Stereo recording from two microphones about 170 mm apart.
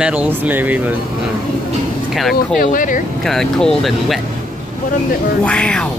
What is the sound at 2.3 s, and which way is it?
Speech, 55° left (ahead or behind).